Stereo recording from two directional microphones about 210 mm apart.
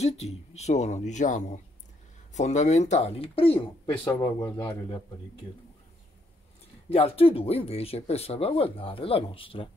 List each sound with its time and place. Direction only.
0.0 s speech: 30° left (ahead or behind)
4.1 s a man's voice: 15° left (ahead or behind)
6.9 s speech: 25° left (ahead or behind)